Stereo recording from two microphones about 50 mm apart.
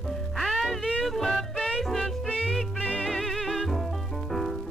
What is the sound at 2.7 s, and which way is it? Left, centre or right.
Music, left.